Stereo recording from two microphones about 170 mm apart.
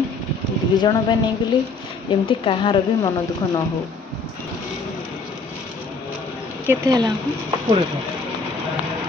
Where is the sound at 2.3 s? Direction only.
30° left (ahead or behind).